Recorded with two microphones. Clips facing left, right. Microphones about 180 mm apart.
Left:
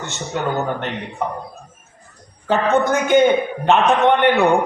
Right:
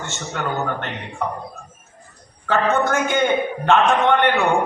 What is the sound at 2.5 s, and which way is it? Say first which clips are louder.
A man's voice: left 2 dB; 20° left (ahead or behind).